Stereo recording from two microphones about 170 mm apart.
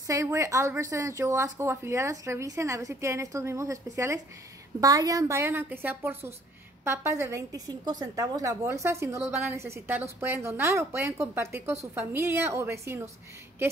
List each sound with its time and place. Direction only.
0.0 s a woman's voice: 20° right (ahead or behind)